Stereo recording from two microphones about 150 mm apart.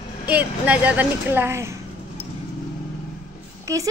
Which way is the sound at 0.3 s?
10° right (ahead or behind).